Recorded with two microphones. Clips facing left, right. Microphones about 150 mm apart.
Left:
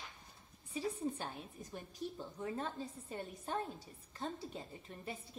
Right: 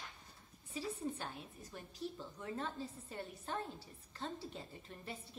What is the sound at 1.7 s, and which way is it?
A woman's voice, 15° left (ahead or behind).